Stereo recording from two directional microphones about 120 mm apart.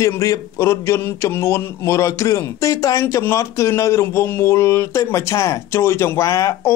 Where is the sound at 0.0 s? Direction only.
25° left (ahead or behind).